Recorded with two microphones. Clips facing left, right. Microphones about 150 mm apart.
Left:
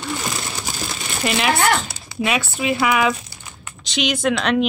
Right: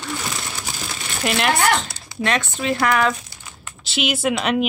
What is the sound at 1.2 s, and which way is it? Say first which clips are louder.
Speech: even; centre (ahead or behind).